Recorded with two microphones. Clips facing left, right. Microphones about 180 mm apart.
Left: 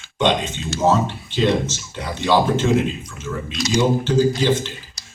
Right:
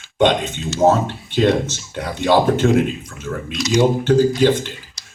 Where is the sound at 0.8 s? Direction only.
60° right (ahead or behind).